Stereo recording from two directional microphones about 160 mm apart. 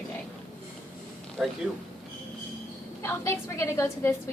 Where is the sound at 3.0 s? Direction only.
20° left (ahead or behind).